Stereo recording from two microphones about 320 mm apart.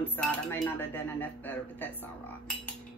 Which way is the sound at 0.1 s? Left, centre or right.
Centre.